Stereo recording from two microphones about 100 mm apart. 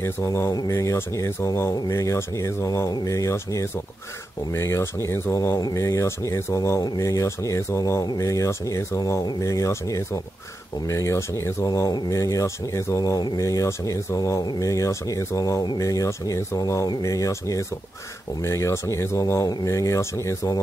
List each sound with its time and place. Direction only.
0.0 s speech: 25° left (ahead or behind)